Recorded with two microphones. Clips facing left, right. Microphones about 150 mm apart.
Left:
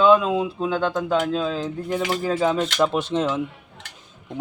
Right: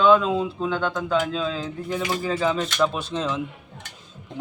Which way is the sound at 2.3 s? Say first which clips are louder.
Left 2 dB; 20° left (ahead or behind).